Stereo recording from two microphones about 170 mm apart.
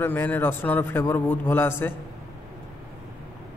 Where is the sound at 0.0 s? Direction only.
10° left (ahead or behind).